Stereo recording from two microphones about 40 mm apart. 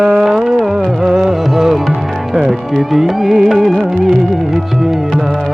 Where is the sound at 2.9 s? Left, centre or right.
Centre.